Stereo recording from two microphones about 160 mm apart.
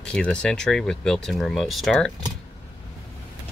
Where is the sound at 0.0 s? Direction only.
5° left (ahead or behind).